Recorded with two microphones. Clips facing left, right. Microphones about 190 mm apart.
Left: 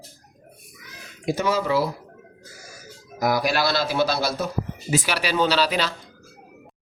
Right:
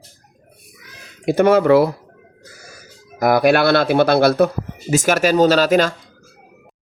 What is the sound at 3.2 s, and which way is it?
Speech, 60° right (ahead or behind).